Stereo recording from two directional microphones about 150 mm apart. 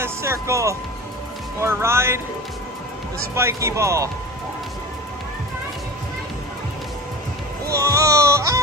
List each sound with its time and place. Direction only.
0.0 s speech: 20° right (ahead or behind)
3.3 s speech: 20° right (ahead or behind)
7.7 s music: 20° right (ahead or behind)